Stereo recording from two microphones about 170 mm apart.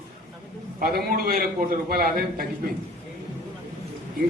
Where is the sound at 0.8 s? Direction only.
60° right (ahead or behind).